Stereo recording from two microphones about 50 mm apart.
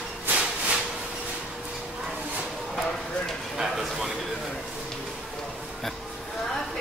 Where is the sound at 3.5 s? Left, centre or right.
Centre.